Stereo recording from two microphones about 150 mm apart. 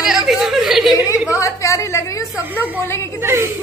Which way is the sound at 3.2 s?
15° right (ahead or behind).